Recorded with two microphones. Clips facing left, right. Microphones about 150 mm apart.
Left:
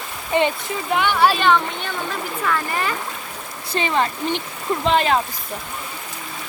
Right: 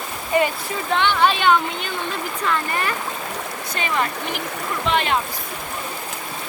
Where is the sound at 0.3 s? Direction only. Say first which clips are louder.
Even; 25° left (ahead or behind).